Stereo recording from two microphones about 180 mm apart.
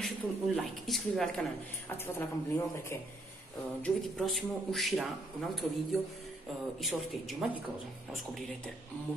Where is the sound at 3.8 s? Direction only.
Centre (ahead or behind).